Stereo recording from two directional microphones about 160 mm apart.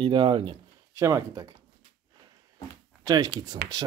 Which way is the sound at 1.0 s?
20° right (ahead or behind).